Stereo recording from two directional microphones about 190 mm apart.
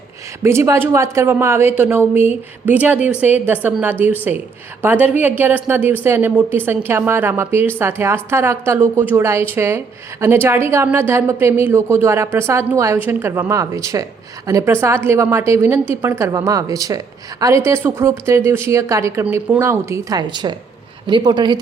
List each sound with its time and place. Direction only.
0.4 s a woman's voice: 15° right (ahead or behind)